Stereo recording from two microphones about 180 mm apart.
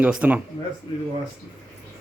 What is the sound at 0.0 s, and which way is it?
Speech, 10° right (ahead or behind).